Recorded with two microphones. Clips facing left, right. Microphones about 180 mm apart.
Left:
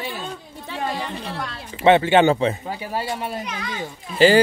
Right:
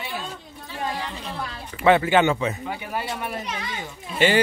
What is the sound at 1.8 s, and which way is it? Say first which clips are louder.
A man's voice: left 3 dB; 25° left (ahead or behind).